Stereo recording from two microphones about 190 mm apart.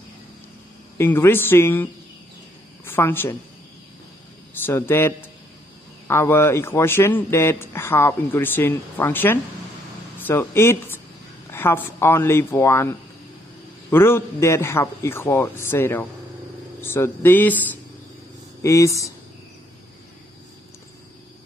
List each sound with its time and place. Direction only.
0.9 s a woman's voice: 10° left (ahead or behind)
4.6 s speech: 10° left (ahead or behind)